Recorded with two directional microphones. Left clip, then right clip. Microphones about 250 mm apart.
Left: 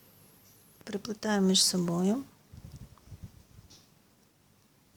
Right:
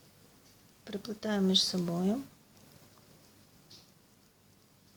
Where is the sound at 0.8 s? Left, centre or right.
Centre.